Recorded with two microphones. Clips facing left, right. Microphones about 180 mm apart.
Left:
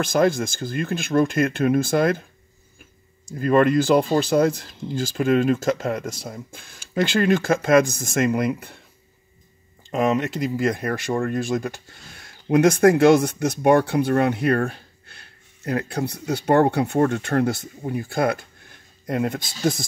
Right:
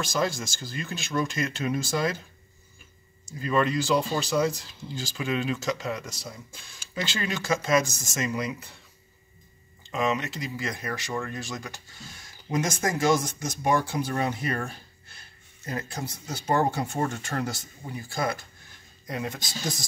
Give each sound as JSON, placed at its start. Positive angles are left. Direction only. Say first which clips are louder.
{"t": 0.0, "sound": "speech", "louder": "left 9 dB", "side_deg": 55}
{"t": 3.3, "sound": "speech", "louder": "left 8 dB", "side_deg": 55}
{"t": 9.8, "sound": "speech", "louder": "left 6 dB", "side_deg": 50}